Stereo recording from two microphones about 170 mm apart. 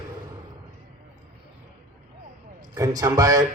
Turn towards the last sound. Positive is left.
turn(degrees=-20)  # may be behind; listen again after turning